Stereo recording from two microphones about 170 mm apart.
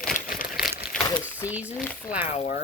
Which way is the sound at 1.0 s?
20° left (ahead or behind).